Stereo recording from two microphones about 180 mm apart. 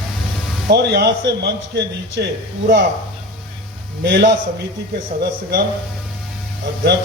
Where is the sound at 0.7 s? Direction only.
65° right (ahead or behind).